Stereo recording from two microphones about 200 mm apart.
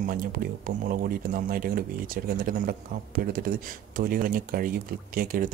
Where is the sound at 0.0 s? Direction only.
45° right (ahead or behind).